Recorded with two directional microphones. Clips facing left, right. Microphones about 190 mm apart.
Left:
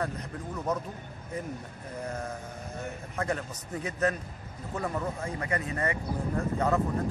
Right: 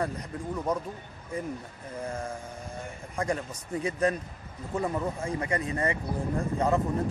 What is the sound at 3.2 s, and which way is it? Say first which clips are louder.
Speech: right 2 dB; 10° right (ahead or behind).